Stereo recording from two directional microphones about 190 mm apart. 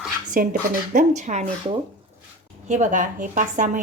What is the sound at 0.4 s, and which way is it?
A woman's voice, 50° right (ahead or behind).